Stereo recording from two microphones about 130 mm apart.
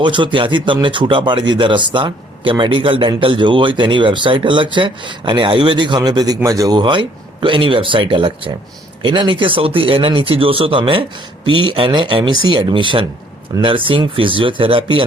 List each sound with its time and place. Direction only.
0.0 s speech: 40° right (ahead or behind)